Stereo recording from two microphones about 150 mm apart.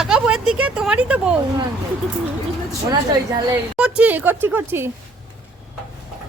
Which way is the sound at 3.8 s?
10° right (ahead or behind).